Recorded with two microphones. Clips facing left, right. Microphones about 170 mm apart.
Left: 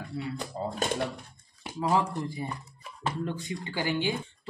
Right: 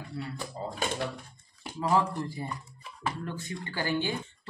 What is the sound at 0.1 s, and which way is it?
Speech, 20° left (ahead or behind).